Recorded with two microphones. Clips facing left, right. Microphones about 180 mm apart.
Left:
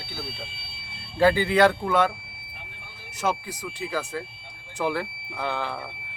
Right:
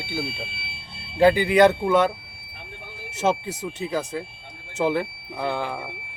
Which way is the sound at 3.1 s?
25° right (ahead or behind).